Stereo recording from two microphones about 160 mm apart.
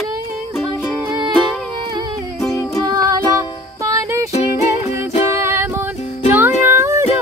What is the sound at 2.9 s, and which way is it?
Music, 20° right (ahead or behind).